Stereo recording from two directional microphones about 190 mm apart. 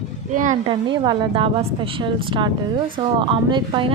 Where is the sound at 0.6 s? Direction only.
25° right (ahead or behind).